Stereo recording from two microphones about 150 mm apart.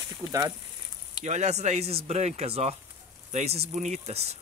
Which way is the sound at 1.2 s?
50° right (ahead or behind).